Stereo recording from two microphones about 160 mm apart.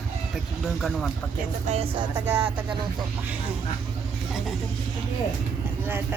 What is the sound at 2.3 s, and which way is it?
Speech, 10° right (ahead or behind).